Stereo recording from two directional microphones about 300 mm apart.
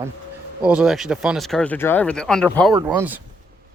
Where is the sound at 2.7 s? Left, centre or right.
Centre.